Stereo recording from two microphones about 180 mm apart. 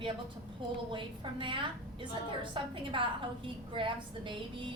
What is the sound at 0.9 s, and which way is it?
A woman's voice, 25° right (ahead or behind).